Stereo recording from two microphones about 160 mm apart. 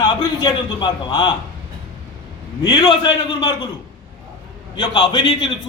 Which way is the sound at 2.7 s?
30° left (ahead or behind).